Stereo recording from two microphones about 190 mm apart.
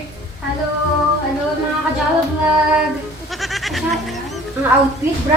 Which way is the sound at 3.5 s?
Centre (ahead or behind).